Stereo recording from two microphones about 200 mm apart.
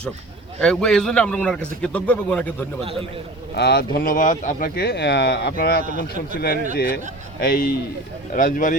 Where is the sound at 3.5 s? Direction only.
55° left (ahead or behind).